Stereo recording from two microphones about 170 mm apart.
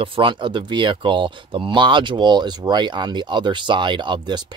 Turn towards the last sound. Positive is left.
turn(degrees=-25)  # may be behind; listen again after turning